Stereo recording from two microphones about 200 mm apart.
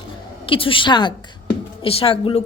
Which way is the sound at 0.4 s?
25° left (ahead or behind).